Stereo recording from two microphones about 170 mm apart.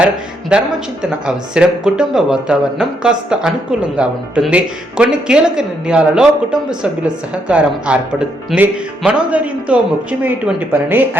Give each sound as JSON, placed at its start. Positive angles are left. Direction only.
{"t": 0.5, "sound": "speech", "side_deg": -5}